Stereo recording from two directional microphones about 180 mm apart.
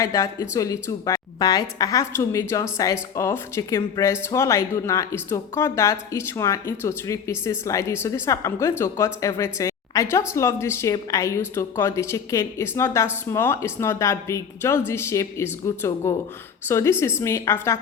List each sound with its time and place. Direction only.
0.0 s speech: 20° left (ahead or behind)